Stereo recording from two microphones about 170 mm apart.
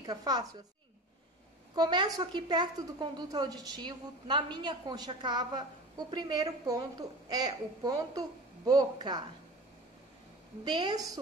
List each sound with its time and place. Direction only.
0.0 s a woman's voice: 25° right (ahead or behind)
1.8 s a woman's voice: 25° right (ahead or behind)
10.6 s a woman's voice: 25° right (ahead or behind)